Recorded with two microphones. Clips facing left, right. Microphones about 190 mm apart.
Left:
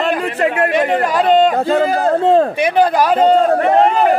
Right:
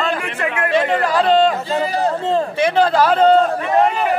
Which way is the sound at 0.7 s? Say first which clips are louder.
Left 2 dB; 20° left (ahead or behind).